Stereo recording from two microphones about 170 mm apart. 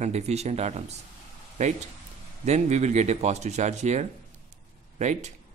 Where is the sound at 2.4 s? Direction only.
40° right (ahead or behind).